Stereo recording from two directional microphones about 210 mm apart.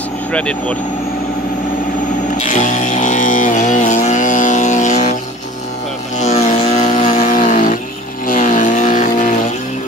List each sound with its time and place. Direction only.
0.3 s speech: 5° left (ahead or behind)
2.4 s music: 35° left (ahead or behind)
6.1 s vehicle: 35° left (ahead or behind)